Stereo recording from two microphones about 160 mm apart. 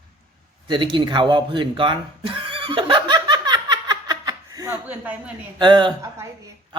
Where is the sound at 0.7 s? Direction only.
30° right (ahead or behind); by 5.3 s 10° right (ahead or behind).